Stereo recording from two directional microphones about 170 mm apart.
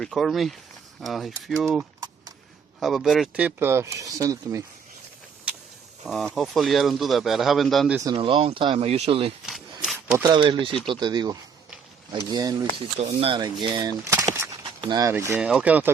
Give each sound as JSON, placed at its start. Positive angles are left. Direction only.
{"t": 0.0, "sound": "speech", "side_deg": 0}
{"t": 6.1, "sound": "speech", "side_deg": 0}
{"t": 8.1, "sound": "speech", "side_deg": -30}
{"t": 9.8, "sound": "a sound", "side_deg": -5}
{"t": 10.2, "sound": "speech", "side_deg": -25}
{"t": 13.0, "sound": "speech", "side_deg": -35}
{"t": 15.4, "sound": "speech", "side_deg": -5}